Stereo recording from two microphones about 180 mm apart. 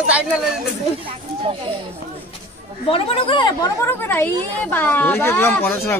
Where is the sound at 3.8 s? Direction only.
10° left (ahead or behind).